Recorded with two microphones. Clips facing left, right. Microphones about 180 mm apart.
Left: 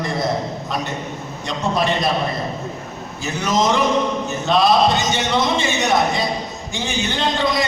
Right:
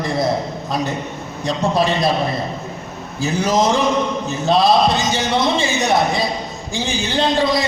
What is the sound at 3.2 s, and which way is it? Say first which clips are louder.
A man's voice: right 3 dB; 35° right (ahead or behind).